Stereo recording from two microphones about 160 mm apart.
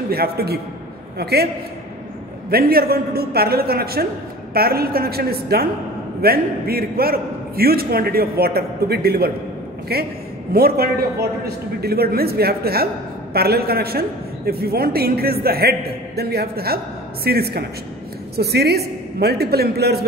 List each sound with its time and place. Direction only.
0.1 s a man's voice: 75° right (ahead or behind)
1.1 s a man's voice: 90° right
2.5 s a man's voice: 70° right (ahead or behind)
18.3 s a woman's voice: 90° right